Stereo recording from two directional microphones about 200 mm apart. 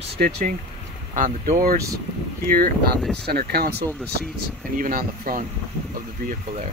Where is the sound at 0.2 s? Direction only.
45° right (ahead or behind).